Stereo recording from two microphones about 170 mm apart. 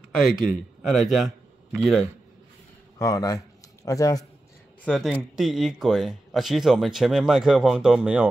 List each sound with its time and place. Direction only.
0.2 s speech: centre (ahead or behind)
1.2 s a sound: centre (ahead or behind)
3.0 s speech: 20° left (ahead or behind)
4.8 s speech: centre (ahead or behind)